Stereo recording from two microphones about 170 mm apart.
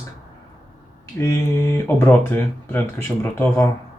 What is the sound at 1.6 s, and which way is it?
Speech, 10° left (ahead or behind).